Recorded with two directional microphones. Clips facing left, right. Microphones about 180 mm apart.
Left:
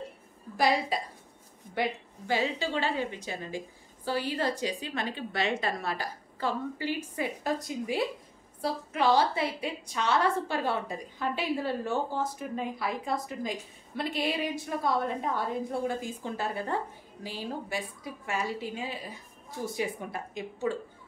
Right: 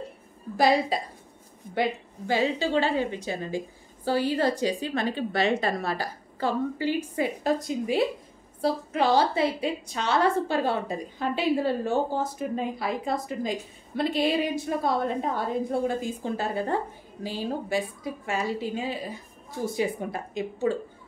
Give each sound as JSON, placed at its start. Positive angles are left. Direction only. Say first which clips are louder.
{"t": 0.6, "sound": "a woman's voice", "louder": "right 4 dB", "side_deg": -30}
{"t": 19.7, "sound": "a woman's voice", "louder": "right 6 dB", "side_deg": -25}